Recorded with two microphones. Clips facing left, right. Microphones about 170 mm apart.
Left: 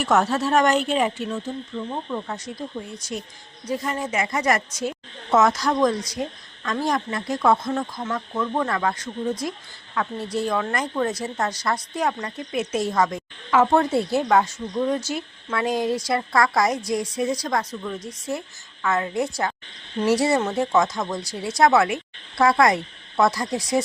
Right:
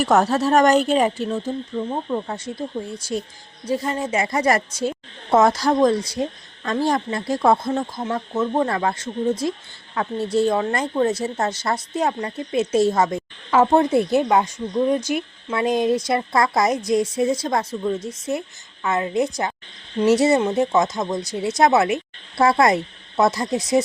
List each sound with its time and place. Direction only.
0.0 s speech: 40° right (ahead or behind); by 23.8 s 20° right (ahead or behind)